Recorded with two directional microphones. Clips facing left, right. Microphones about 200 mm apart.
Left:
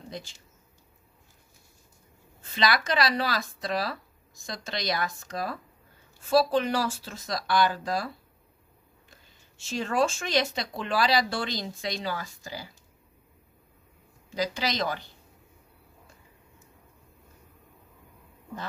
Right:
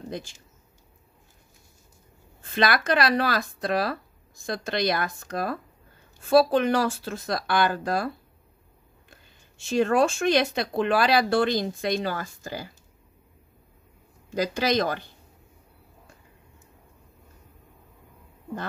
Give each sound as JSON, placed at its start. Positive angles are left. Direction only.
{"t": 2.5, "sound": "speech", "side_deg": -55}
{"t": 9.1, "sound": "speech", "side_deg": -55}
{"t": 14.3, "sound": "speech", "side_deg": -50}